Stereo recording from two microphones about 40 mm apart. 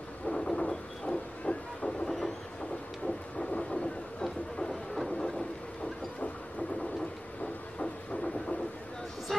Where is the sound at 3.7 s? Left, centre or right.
Centre.